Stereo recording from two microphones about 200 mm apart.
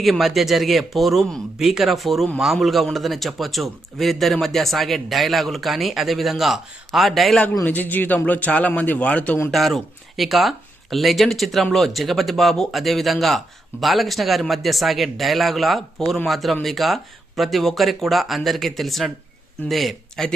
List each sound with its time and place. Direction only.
0.0 s speech: centre (ahead or behind)